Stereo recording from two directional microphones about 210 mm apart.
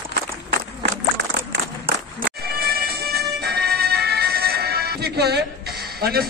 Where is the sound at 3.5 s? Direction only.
50° right (ahead or behind).